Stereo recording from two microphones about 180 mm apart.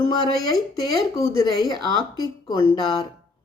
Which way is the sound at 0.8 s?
15° left (ahead or behind).